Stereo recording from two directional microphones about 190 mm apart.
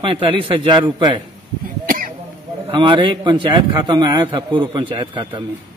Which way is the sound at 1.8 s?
50° right (ahead or behind).